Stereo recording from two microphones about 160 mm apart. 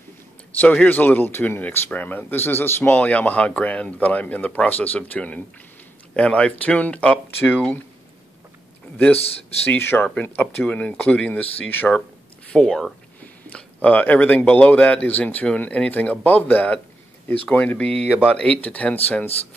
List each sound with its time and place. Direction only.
0.6 s a man's voice: 10° left (ahead or behind)
8.9 s a man's voice: 10° left (ahead or behind)
9.2 s a man's voice: 40° left (ahead or behind)
9.7 s a man's voice: 15° left (ahead or behind)